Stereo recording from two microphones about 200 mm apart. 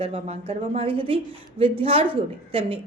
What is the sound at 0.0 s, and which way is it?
A woman's voice, 30° right (ahead or behind).